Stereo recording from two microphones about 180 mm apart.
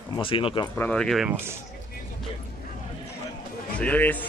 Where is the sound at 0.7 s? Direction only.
5° left (ahead or behind).